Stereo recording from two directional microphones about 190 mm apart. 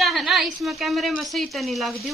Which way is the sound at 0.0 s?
Centre (ahead or behind).